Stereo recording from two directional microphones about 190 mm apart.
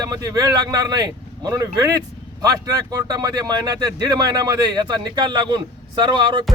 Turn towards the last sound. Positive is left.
turn(degrees=-25)  # may be behind; listen again after turning